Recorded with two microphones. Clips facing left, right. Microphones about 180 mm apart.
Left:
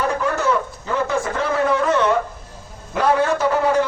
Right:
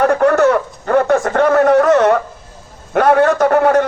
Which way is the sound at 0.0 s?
60° right (ahead or behind).